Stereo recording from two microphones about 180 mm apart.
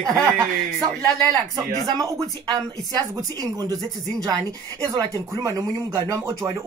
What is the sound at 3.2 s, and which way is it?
Speech, 20° right (ahead or behind).